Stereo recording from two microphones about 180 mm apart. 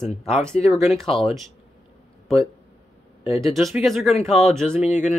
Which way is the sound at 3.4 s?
Centre (ahead or behind).